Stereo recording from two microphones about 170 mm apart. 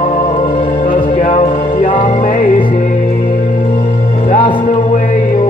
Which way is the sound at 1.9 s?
30° left (ahead or behind).